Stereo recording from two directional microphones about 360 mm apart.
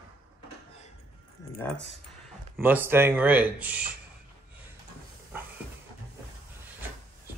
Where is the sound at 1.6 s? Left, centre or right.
Centre.